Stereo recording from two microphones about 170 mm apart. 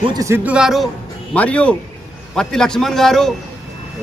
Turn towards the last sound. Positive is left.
turn(degrees=0)  # may be behind; listen again after turning